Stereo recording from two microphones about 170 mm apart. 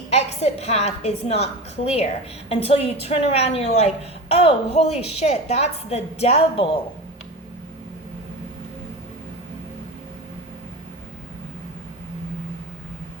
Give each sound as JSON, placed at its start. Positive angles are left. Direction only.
{"t": 0.1, "sound": "a woman's voice", "side_deg": 40}